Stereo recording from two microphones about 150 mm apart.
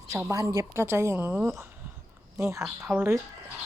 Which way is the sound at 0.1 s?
20° right (ahead or behind).